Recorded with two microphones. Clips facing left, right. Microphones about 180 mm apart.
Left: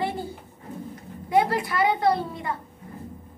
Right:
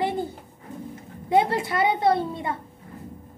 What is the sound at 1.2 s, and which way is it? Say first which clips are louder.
A child's voice: right 1 dB; 25° right (ahead or behind).